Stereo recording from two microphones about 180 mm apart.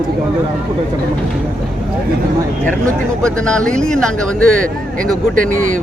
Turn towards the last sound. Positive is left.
turn(degrees=-45)  # may be behind; listen again after turning